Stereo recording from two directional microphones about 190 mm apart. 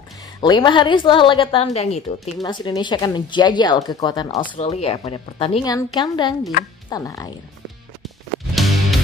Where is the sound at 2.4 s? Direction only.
25° left (ahead or behind).